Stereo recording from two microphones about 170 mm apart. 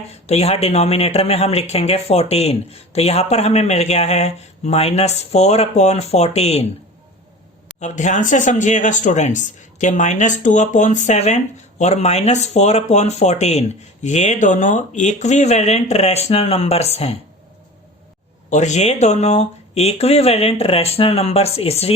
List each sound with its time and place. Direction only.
0.1 s a man's voice: 40° left (ahead or behind)
7.8 s speech: 45° left (ahead or behind)
18.5 s a man's voice: 45° left (ahead or behind)